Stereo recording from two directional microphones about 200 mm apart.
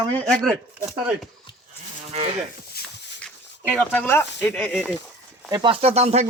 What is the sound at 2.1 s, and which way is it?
Speech, 30° right (ahead or behind).